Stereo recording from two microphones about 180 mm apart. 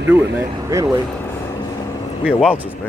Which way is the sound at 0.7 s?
20° right (ahead or behind).